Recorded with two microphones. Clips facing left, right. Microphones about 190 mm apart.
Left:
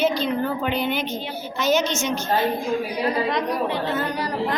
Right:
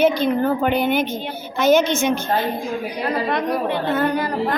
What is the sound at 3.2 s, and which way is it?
A woman's voice, 55° right (ahead or behind).